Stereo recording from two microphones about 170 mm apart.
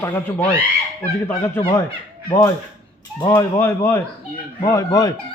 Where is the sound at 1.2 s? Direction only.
15° left (ahead or behind).